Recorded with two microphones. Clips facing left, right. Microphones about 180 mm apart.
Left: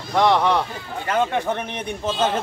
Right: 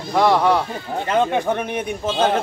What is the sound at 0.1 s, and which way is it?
Speech, 10° right (ahead or behind).